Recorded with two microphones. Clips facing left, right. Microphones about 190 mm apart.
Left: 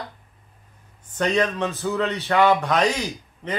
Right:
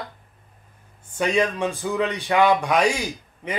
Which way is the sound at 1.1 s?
10° right (ahead or behind).